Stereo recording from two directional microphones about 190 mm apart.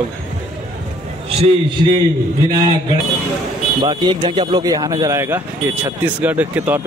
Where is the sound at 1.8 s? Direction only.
30° right (ahead or behind).